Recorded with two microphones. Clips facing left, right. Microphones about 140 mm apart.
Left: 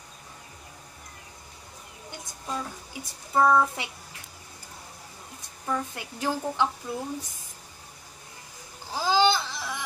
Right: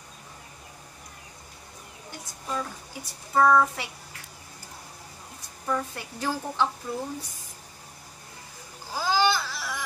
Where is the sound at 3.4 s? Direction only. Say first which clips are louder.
Right 1 dB; 20° left (ahead or behind).